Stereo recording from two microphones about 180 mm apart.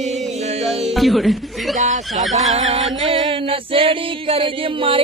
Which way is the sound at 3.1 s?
30° right (ahead or behind).